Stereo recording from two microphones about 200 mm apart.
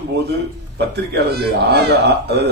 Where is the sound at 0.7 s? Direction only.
55° right (ahead or behind).